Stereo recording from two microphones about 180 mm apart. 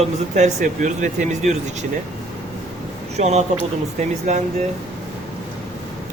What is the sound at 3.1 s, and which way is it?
A man's voice, 40° right (ahead or behind).